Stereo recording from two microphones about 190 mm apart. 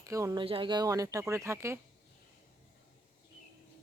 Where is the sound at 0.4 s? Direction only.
25° right (ahead or behind).